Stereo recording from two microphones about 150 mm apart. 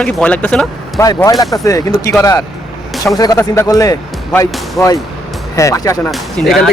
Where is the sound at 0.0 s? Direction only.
10° left (ahead or behind).